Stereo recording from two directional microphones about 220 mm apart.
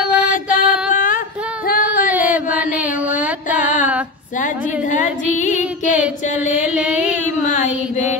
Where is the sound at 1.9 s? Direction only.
5° right (ahead or behind).